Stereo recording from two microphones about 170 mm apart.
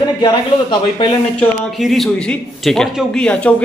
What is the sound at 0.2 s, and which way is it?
Speech, 25° left (ahead or behind).